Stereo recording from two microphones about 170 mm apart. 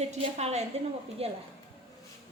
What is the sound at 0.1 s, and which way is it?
A woman's voice, 40° right (ahead or behind).